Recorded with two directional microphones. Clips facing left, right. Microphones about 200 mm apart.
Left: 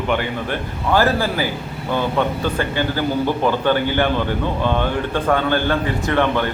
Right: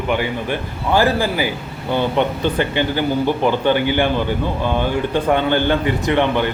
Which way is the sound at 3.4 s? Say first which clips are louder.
Right 2 dB; 15° right (ahead or behind).